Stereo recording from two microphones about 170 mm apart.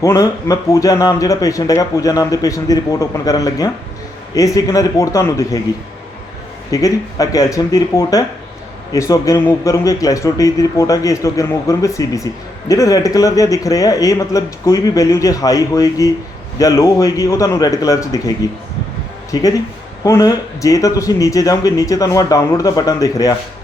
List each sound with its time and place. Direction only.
0.0 s a man's voice: 20° left (ahead or behind)
6.7 s a man's voice: 20° left (ahead or behind)
19.3 s a man's voice: 20° left (ahead or behind)